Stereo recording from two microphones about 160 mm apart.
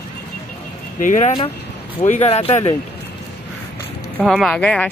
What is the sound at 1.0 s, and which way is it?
Speech, 50° left (ahead or behind).